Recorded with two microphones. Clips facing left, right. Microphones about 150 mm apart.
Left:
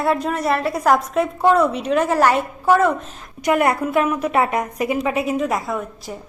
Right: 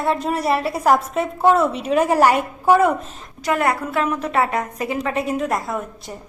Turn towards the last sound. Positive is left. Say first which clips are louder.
# left 1 dB
turn(degrees=0)  # may be behind; listen again after turning